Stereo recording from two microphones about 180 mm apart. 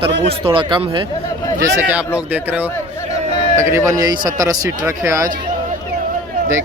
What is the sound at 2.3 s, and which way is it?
Speech, 10° right (ahead or behind).